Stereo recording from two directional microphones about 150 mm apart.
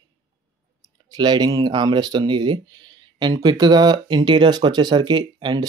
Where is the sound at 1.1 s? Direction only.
25° right (ahead or behind).